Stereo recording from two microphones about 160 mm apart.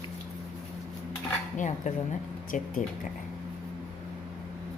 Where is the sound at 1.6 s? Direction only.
50° left (ahead or behind).